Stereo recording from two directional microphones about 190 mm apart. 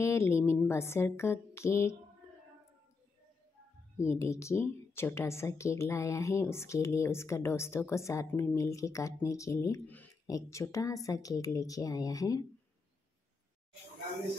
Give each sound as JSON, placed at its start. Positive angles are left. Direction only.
{"t": 0.0, "sound": "speech", "side_deg": 15}
{"t": 4.0, "sound": "speech", "side_deg": 15}